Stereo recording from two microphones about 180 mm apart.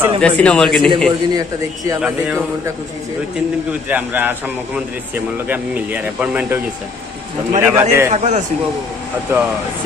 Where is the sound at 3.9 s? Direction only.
10° right (ahead or behind).